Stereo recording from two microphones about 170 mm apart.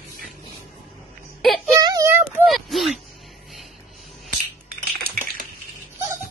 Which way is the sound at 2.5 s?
Centre (ahead or behind).